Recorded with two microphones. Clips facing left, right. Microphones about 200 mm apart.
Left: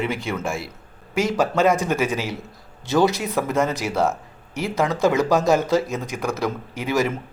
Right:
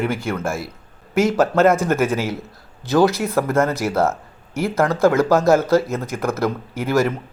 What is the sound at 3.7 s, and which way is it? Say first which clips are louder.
Speech: right 3 dB; 15° left (ahead or behind).